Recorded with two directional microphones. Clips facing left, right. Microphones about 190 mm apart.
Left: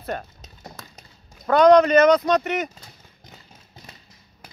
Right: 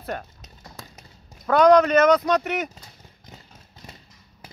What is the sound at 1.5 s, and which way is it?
Speech, 5° right (ahead or behind).